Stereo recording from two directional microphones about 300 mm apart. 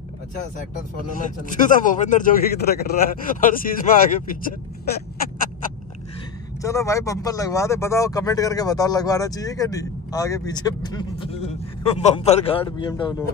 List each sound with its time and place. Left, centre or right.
1.1 s speech: left
6.6 s speech: centre